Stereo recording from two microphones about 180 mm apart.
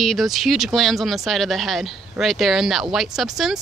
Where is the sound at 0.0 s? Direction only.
Centre (ahead or behind).